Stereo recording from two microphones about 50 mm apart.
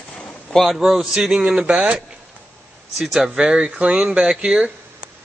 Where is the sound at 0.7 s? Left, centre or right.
Centre.